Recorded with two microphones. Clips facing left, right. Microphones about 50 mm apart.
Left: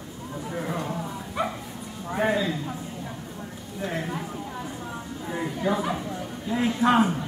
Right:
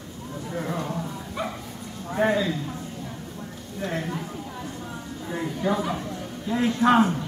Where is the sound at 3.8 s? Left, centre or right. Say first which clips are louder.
Right 1 dB; centre.